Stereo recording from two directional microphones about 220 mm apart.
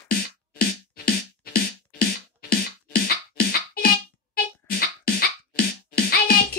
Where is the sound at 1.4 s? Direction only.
45° left (ahead or behind).